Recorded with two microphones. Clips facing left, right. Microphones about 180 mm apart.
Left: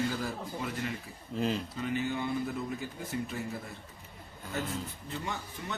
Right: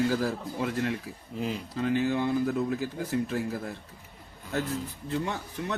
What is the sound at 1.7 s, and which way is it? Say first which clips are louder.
Speech: right 6 dB; 80° right.